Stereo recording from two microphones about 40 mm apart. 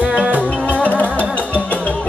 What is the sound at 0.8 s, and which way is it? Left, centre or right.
Music, left.